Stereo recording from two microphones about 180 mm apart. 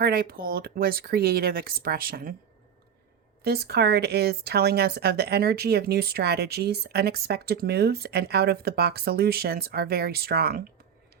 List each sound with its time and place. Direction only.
0.0 s speech: 55° right (ahead or behind)
3.4 s speech: 65° right (ahead or behind)